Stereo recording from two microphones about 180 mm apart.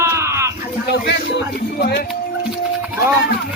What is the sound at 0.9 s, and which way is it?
A man's voice, 65° left (ahead or behind).